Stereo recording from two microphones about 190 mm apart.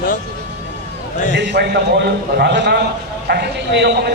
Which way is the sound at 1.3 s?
60° right (ahead or behind).